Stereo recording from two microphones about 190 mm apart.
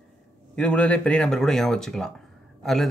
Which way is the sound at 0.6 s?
5° left (ahead or behind).